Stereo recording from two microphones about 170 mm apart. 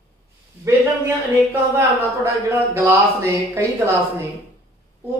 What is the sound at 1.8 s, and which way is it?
Speech, 15° right (ahead or behind).